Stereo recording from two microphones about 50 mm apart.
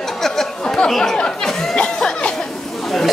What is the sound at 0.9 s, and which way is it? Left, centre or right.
Speech, centre.